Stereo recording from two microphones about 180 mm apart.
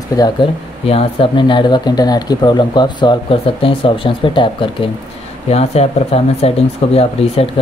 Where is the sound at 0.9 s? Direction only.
30° left (ahead or behind).